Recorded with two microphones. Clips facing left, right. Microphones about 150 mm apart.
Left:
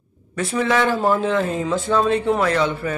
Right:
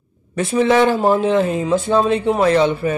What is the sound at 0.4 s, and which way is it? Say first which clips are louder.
Speech: right 5 dB; 20° right (ahead or behind).